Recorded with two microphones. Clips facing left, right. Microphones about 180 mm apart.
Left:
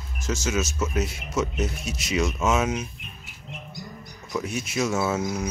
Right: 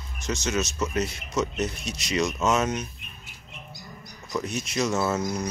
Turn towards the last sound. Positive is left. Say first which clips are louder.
# left 1 dB
turn(degrees=5)  # may be behind; listen again after turning